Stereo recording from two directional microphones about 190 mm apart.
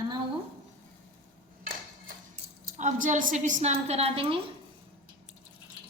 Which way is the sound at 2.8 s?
40° right (ahead or behind).